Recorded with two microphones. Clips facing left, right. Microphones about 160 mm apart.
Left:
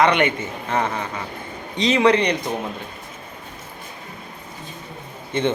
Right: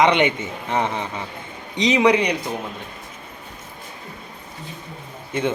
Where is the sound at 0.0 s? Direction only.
20° right (ahead or behind).